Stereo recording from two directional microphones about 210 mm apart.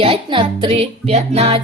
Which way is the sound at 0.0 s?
25° right (ahead or behind).